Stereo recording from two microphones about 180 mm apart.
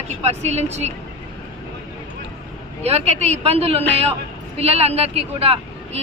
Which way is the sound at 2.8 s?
35° right (ahead or behind).